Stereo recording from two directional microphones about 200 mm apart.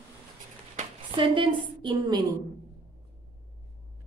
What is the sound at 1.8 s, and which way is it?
Speech, 20° right (ahead or behind).